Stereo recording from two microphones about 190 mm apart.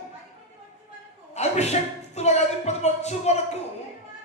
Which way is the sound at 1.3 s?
35° left (ahead or behind).